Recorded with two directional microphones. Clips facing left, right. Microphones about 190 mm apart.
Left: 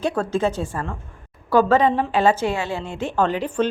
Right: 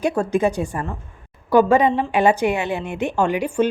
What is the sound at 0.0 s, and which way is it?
A woman's voice, 10° right (ahead or behind).